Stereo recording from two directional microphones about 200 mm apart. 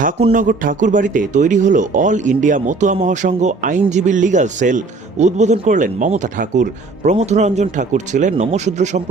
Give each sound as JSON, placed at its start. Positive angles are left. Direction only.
{"t": 0.3, "sound": "speech", "side_deg": -40}